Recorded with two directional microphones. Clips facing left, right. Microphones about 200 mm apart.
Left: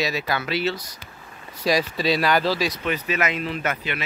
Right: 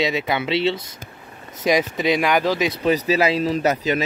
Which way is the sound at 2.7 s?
35° right (ahead or behind).